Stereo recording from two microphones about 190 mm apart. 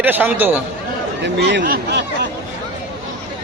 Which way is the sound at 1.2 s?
65° right (ahead or behind).